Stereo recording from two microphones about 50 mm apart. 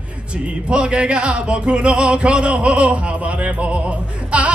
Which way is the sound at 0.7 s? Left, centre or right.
Right.